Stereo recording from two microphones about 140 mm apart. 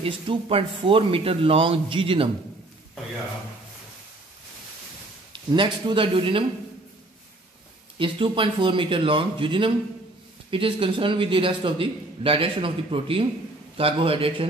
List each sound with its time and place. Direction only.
0.0 s a man's voice: 45° right (ahead or behind)
5.3 s a man's voice: 35° right (ahead or behind)
8.0 s a man's voice: 35° right (ahead or behind)